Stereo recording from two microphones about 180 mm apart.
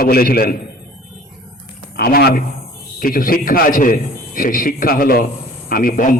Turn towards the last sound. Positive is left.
turn(degrees=50)  # may be behind; listen again after turning